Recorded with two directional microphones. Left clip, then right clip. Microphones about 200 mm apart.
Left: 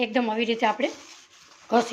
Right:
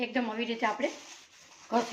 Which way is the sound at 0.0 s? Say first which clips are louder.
Left 8 dB; 40° left (ahead or behind).